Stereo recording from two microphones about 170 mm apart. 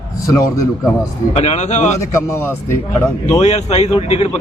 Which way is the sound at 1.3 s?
40° left (ahead or behind).